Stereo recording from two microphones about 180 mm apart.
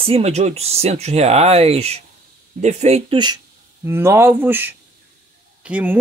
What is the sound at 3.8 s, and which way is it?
Speech, 15° right (ahead or behind).